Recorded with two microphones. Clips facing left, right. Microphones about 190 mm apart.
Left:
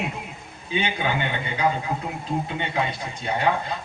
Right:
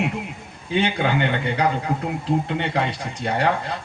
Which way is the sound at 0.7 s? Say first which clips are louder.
Right 4 dB; 65° right (ahead or behind).